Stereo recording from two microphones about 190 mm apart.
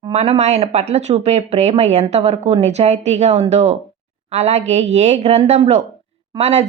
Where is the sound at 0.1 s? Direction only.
35° right (ahead or behind).